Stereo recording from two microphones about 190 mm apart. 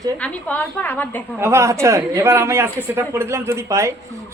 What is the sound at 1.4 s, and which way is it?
Speech, 15° right (ahead or behind).